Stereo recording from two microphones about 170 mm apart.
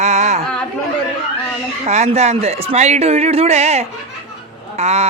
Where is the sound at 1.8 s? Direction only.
40° right (ahead or behind).